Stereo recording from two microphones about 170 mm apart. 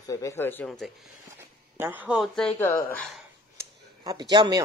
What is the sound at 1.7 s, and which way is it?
Speech, 10° right (ahead or behind).